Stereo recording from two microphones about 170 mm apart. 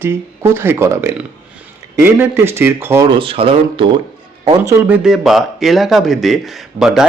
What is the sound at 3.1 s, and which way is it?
Speech, 35° right (ahead or behind).